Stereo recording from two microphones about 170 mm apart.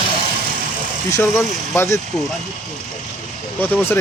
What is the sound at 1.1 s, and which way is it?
Speech, 15° left (ahead or behind).